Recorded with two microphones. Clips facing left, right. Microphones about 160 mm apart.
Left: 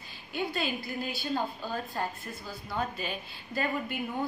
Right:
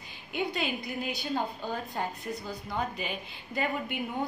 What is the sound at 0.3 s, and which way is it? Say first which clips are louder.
A woman's voice: right 1 dB; 20° right (ahead or behind).